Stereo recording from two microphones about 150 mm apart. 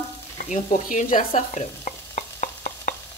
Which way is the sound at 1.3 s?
50° left (ahead or behind).